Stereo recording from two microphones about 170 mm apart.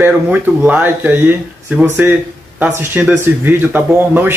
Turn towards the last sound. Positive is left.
turn(degrees=-10)  # may be behind; listen again after turning